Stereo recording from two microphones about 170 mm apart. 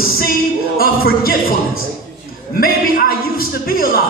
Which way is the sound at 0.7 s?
60° left (ahead or behind).